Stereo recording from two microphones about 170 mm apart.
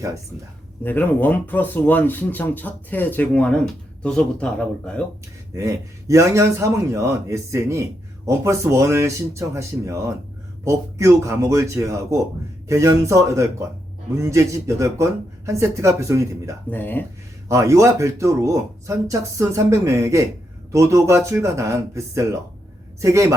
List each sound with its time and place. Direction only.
0.9 s speech: 10° left (ahead or behind)
5.5 s a man's voice: 20° right (ahead or behind)
16.6 s speech: 10° left (ahead or behind)
17.5 s a man's voice: 20° right (ahead or behind)